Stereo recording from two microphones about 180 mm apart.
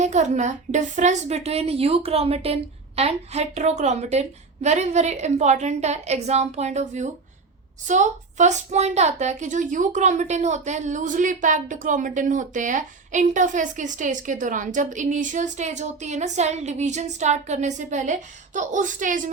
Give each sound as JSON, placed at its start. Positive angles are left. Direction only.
{"t": 0.0, "sound": "a woman's voice", "side_deg": -40}